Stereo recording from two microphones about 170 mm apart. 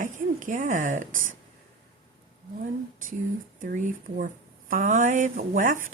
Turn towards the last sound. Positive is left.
turn(degrees=-50)  # may be behind; listen again after turning